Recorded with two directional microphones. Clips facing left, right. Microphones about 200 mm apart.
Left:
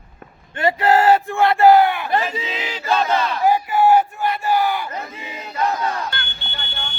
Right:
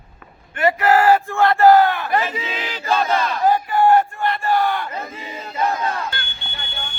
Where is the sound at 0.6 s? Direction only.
25° left (ahead or behind); by 3.3 s centre (ahead or behind).